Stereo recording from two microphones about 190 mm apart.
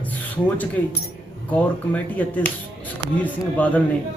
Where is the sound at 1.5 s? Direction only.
10° left (ahead or behind).